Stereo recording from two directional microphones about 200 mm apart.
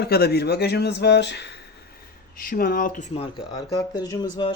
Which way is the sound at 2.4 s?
45° left (ahead or behind).